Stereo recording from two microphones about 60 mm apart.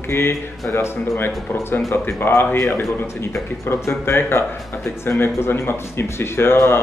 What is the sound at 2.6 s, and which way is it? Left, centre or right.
Speech, left.